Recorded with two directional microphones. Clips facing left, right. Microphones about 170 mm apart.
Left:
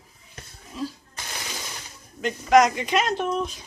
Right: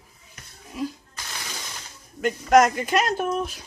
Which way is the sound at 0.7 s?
10° right (ahead or behind).